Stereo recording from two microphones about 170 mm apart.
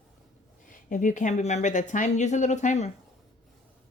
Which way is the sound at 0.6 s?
50° left (ahead or behind).